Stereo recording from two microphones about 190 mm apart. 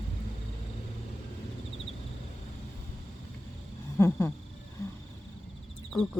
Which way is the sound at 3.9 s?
10° left (ahead or behind).